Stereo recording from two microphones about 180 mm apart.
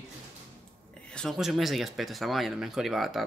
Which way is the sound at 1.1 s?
Centre (ahead or behind).